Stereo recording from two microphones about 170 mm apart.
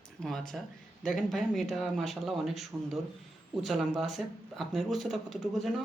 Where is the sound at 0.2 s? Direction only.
5° left (ahead or behind).